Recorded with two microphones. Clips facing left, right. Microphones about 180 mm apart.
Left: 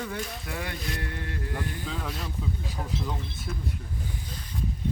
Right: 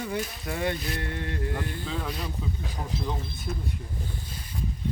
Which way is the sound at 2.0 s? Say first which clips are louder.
Right 2 dB; centre (ahead or behind).